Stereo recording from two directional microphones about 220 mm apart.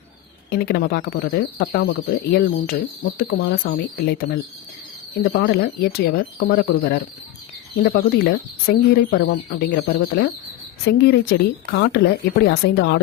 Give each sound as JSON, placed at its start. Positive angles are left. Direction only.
{"t": 0.5, "sound": "speech", "side_deg": 45}